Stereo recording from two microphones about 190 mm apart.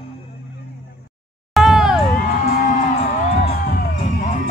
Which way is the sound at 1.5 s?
Centre (ahead or behind).